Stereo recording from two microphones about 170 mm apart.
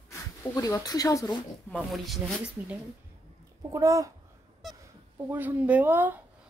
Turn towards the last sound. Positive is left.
turn(degrees=-10)  # may be behind; listen again after turning